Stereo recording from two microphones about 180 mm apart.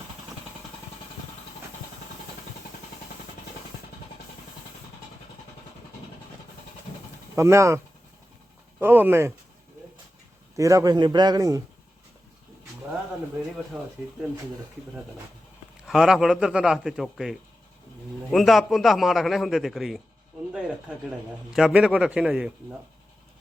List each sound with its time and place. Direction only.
7.3 s speech: 15° right (ahead or behind)
8.8 s speech: 10° right (ahead or behind)
10.6 s a man's voice: 15° right (ahead or behind)
13.7 s a man's voice: centre (ahead or behind)
15.9 s a man's voice: centre (ahead or behind)
20.5 s a sound: 5° right (ahead or behind)
21.5 s a man's voice: 5° right (ahead or behind)